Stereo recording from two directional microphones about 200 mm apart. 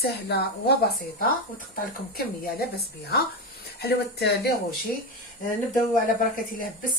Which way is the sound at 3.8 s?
55° left (ahead or behind).